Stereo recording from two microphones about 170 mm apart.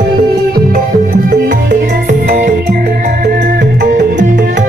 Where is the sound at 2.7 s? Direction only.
65° right (ahead or behind).